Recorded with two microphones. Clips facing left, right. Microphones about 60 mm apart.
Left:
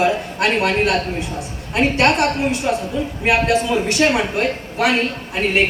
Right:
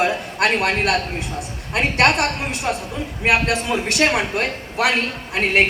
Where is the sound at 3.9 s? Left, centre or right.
Right.